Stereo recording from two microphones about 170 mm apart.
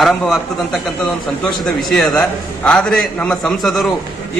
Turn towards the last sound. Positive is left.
turn(degrees=0)  # may be behind; listen again after turning